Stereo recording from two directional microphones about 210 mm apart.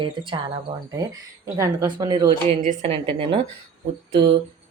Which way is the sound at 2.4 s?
35° right (ahead or behind).